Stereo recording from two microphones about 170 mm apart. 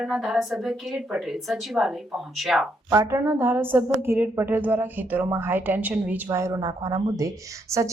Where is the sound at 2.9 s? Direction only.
15° right (ahead or behind).